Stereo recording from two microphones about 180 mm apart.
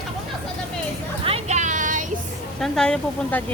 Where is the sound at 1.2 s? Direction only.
35° right (ahead or behind).